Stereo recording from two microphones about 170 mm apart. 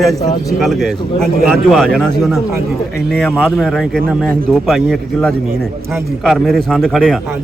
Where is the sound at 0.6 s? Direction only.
Centre (ahead or behind).